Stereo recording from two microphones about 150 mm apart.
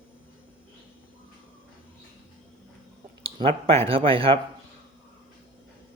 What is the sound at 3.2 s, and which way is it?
Speech, 40° right (ahead or behind).